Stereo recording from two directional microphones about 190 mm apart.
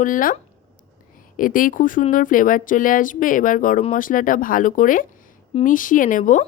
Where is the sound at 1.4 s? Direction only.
45° left (ahead or behind).